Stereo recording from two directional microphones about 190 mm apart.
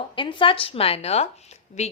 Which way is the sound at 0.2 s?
25° left (ahead or behind).